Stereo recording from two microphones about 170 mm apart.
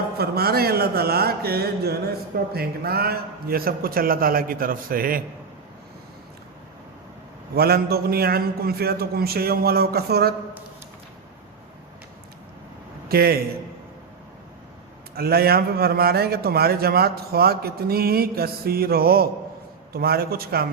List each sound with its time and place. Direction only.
0.2 s mantra: 65° right (ahead or behind)
2.5 s a man's voice: 65° right (ahead or behind)
7.5 s a man's voice: 65° right (ahead or behind)
13.1 s a man's voice: 65° right (ahead or behind)
15.1 s a man's voice: 65° right (ahead or behind)